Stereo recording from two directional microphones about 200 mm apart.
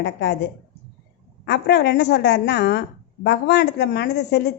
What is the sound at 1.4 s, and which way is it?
Speech, 60° left (ahead or behind).